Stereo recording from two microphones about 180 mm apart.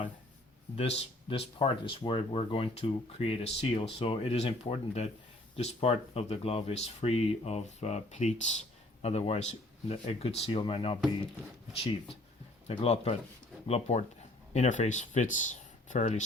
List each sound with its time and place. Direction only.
0.8 s speech: 35° left (ahead or behind)